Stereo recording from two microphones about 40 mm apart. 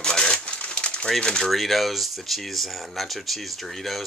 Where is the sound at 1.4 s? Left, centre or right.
Centre.